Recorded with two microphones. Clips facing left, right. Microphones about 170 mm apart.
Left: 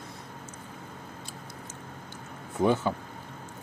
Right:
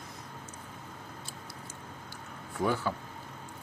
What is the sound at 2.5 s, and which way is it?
Speech, 20° left (ahead or behind).